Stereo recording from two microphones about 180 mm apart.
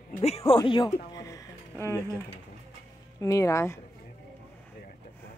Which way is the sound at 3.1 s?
15° left (ahead or behind).